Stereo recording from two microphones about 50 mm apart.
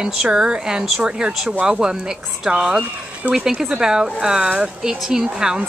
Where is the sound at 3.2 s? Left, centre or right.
Right.